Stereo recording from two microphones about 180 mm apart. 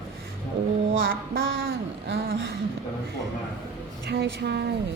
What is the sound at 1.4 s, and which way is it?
Speech, 75° right (ahead or behind).